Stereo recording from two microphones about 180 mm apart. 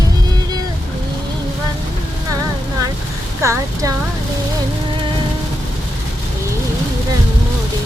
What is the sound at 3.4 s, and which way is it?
Speech, 15° right (ahead or behind).